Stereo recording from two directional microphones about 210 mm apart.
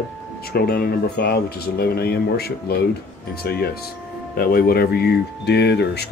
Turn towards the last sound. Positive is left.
turn(degrees=55)  # may be behind; listen again after turning